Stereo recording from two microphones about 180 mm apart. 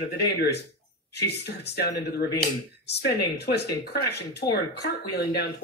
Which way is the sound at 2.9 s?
65° left (ahead or behind).